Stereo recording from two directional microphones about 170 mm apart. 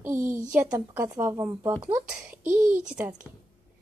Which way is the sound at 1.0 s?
20° right (ahead or behind).